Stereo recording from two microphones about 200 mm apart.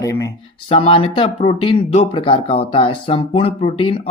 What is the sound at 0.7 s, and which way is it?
Speech, 25° left (ahead or behind).